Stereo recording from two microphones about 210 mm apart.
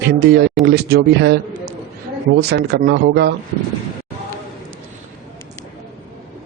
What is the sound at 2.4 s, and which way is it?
Speech, 50° right (ahead or behind).